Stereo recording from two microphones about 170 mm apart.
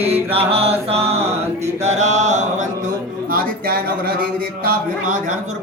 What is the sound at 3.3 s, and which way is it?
Speech, 60° right (ahead or behind).